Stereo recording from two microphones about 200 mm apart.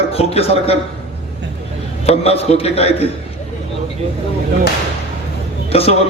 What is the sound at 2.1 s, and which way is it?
A man's voice, 30° left (ahead or behind).